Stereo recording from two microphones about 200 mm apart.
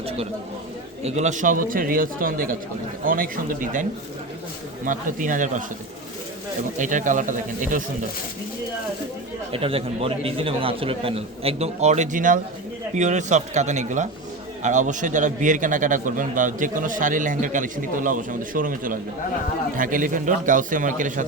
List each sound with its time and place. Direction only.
1.0 s a man's voice: 35° right (ahead or behind)
4.9 s a man's voice: 40° right (ahead or behind)
6.7 s a man's voice: 40° right (ahead or behind)
9.5 s a man's voice: 30° right (ahead or behind)